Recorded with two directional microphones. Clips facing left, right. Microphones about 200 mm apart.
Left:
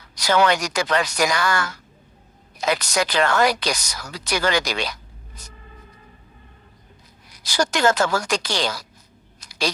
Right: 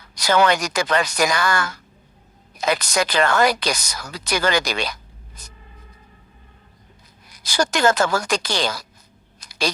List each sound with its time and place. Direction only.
0.2 s speech: 50° right (ahead or behind)
7.4 s speech: 50° right (ahead or behind)
9.4 s a sound: 50° right (ahead or behind)